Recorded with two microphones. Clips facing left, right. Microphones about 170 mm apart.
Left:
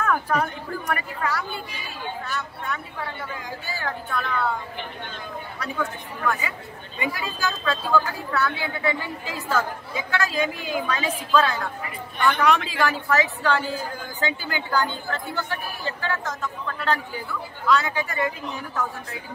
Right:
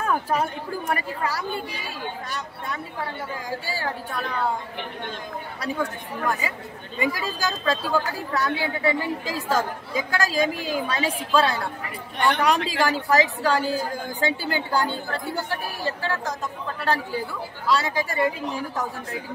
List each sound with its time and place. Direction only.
0.0 s a man's voice: 30° right (ahead or behind)
5.6 s a man's voice: 35° right (ahead or behind)